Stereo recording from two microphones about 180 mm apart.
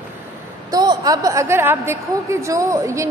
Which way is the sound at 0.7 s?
20° right (ahead or behind).